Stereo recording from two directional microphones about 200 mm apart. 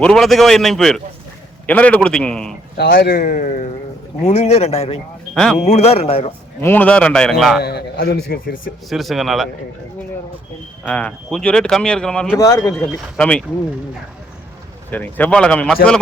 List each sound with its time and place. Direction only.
0.0 s speech: centre (ahead or behind)
2.7 s a man's voice: 55° left (ahead or behind); by 4.9 s 30° left (ahead or behind)
5.3 s speech: centre (ahead or behind)
5.5 s speech: 35° left (ahead or behind)
6.6 s speech: 10° left (ahead or behind)
7.6 s a man's voice: 55° left (ahead or behind)
8.9 s speech: centre (ahead or behind)
10.8 s speech: 5° left (ahead or behind)
12.4 s speech: 15° left (ahead or behind)
12.7 s speech: 5° left (ahead or behind)
14.8 s speech: 10° left (ahead or behind)